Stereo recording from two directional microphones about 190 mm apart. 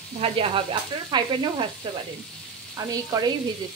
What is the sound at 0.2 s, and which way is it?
Sizzle, 30° right (ahead or behind).